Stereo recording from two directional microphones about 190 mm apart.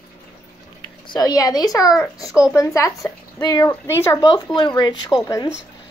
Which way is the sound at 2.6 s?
15° left (ahead or behind).